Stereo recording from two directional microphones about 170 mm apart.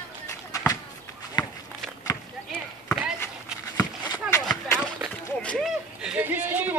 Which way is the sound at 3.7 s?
20° left (ahead or behind).